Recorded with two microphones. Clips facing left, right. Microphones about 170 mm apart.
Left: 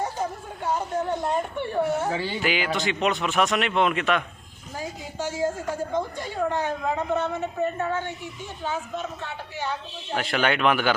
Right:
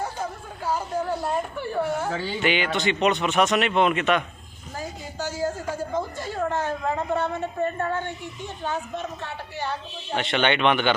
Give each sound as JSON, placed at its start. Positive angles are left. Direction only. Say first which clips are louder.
{"t": 0.0, "sound": "speech", "louder": "left 2 dB", "side_deg": 0}
{"t": 5.9, "sound": "a woman's voice", "louder": "even", "side_deg": 0}
{"t": 7.3, "sound": "a woman's voice", "louder": "even", "side_deg": 5}
{"t": 10.1, "sound": "a woman's voice", "louder": "right 1 dB", "side_deg": 0}